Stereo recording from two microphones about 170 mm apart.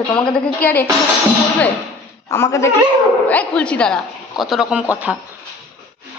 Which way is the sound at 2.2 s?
15° left (ahead or behind).